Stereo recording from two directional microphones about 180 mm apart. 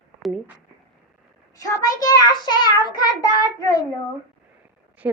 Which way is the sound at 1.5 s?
20° left (ahead or behind).